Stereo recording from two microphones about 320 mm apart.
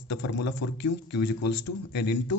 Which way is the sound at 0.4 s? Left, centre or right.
Left.